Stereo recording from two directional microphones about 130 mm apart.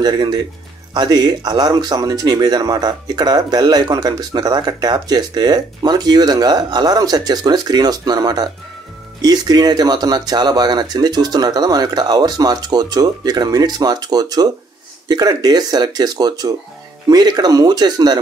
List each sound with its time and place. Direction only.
0.0 s speech: 35° right (ahead or behind)